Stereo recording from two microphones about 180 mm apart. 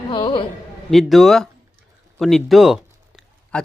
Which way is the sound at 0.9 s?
Centre (ahead or behind).